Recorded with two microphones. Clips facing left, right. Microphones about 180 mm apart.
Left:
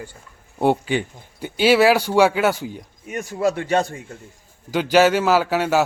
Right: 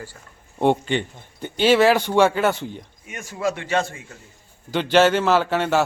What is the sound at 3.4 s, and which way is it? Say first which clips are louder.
Speech: left 3 dB; 40° left (ahead or behind).